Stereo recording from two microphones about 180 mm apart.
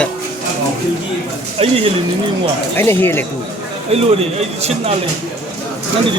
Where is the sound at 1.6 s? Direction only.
30° right (ahead or behind).